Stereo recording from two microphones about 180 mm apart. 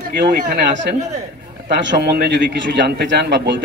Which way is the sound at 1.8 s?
75° right (ahead or behind).